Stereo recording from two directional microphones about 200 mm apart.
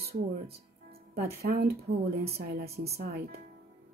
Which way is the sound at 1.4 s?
50° right (ahead or behind).